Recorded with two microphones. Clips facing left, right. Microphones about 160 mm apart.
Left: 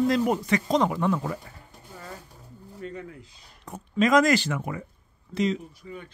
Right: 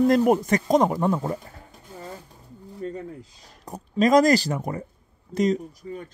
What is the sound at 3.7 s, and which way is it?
Speech, 35° right (ahead or behind).